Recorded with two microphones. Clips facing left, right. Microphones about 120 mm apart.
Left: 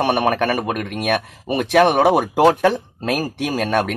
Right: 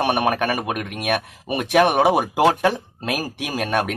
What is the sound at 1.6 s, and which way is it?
Speech, 15° right (ahead or behind).